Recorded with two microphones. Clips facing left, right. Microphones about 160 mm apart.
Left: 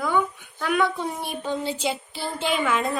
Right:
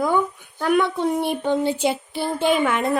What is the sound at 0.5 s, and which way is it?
Child singing, 45° right (ahead or behind).